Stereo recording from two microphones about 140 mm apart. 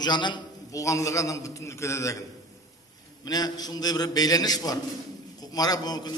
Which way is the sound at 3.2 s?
30° left (ahead or behind).